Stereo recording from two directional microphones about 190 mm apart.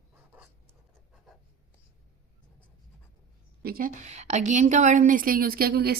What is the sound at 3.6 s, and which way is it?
A woman's voice, 50° right (ahead or behind).